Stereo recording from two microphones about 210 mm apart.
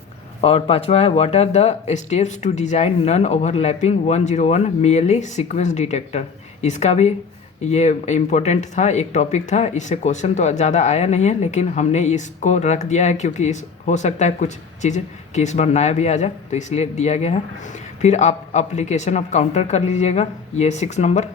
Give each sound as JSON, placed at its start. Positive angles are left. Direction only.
{"t": 0.4, "sound": "speech", "side_deg": 30}